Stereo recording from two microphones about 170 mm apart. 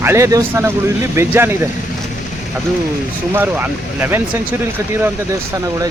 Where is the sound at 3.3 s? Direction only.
10° right (ahead or behind).